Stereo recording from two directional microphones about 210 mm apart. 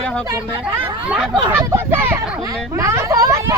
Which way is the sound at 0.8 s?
5° right (ahead or behind).